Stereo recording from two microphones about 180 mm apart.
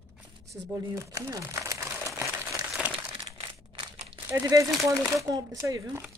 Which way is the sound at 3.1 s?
30° right (ahead or behind).